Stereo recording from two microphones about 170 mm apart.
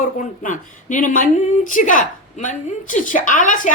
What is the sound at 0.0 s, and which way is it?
Speech, 50° left (ahead or behind).